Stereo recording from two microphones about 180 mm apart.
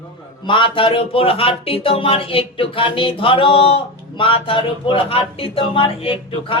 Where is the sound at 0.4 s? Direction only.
30° left (ahead or behind).